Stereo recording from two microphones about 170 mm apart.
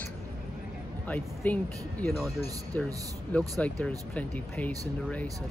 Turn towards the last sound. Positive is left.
turn(degrees=10)  # may be behind; listen again after turning